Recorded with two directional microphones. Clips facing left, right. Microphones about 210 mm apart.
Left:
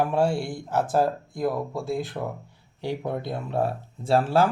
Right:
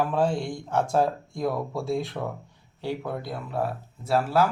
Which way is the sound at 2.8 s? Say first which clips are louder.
Left 2 dB; 15° left (ahead or behind).